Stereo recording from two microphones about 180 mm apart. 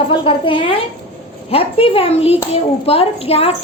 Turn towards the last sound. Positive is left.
turn(degrees=35)  # may be behind; listen again after turning